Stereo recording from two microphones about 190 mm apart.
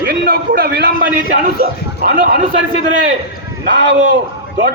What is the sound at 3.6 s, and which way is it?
Speech, 65° right (ahead or behind).